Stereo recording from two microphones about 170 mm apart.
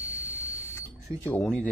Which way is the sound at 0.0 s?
Centre (ahead or behind).